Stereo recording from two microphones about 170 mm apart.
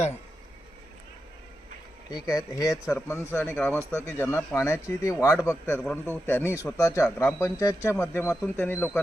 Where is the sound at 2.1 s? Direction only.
20° left (ahead or behind).